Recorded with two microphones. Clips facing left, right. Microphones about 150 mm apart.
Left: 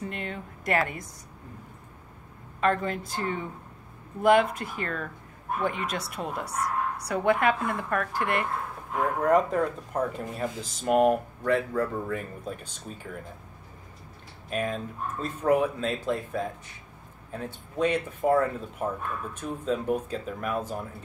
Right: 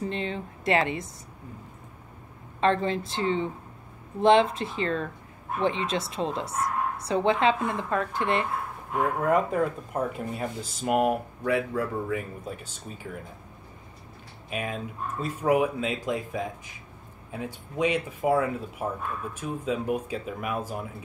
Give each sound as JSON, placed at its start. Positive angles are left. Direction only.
{"t": 0.1, "sound": "a woman's voice", "side_deg": -25}
{"t": 2.6, "sound": "a woman's voice", "side_deg": -25}
{"t": 9.2, "sound": "speech", "side_deg": -5}
{"t": 14.5, "sound": "speech", "side_deg": -5}